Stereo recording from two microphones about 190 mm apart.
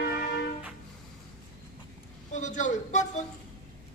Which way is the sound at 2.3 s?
40° left (ahead or behind).